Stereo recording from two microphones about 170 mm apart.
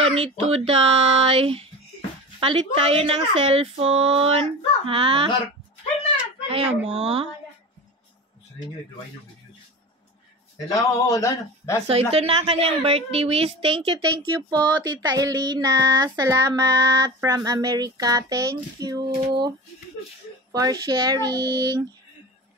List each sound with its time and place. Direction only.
0.0 s speech: 35° right (ahead or behind)
6.9 s speech: 35° right (ahead or behind)
10.7 s speech: 20° left (ahead or behind)
12.1 s a woman's voice: 35° right (ahead or behind)
20.5 s a woman's voice: 25° right (ahead or behind)